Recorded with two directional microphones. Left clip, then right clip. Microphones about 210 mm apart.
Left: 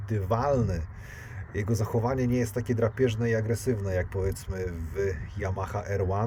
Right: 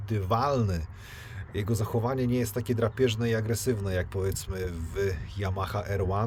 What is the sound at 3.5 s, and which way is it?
Speech, 25° right (ahead or behind).